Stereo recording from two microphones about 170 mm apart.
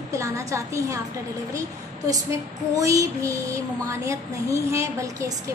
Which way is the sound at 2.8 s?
20° right (ahead or behind).